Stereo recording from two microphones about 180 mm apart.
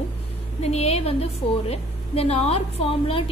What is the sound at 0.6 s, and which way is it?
A woman's voice, 35° left (ahead or behind).